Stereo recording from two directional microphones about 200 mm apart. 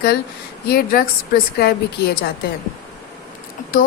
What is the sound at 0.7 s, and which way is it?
Speech, 50° left (ahead or behind).